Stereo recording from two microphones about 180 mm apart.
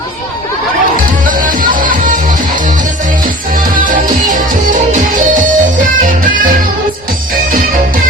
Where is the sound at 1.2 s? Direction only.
50° right (ahead or behind).